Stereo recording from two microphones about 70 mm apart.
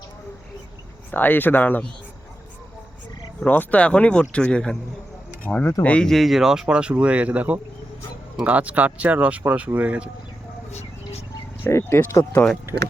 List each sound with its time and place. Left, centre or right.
1.1 s speech: left
3.4 s speech: left
6.1 s speech: centre
11.7 s speech: left
12.7 s speech: right